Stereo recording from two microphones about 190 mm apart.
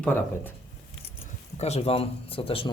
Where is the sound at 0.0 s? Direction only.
10° left (ahead or behind).